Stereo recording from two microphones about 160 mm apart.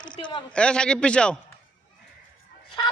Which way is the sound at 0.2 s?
30° left (ahead or behind).